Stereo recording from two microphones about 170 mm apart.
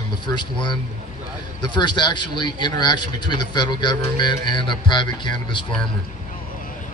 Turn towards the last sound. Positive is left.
turn(degrees=25)  # may be behind; listen again after turning